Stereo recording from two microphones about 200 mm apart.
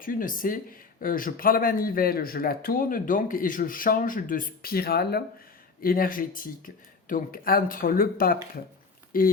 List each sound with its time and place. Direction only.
0.0 s speech: 45° left (ahead or behind)